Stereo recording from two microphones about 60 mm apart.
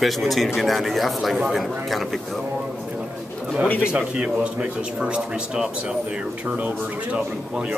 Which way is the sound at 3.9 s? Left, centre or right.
Centre.